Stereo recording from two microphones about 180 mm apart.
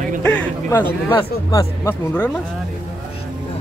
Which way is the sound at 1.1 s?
20° left (ahead or behind).